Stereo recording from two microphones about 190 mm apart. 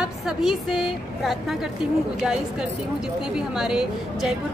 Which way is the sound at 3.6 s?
5° right (ahead or behind).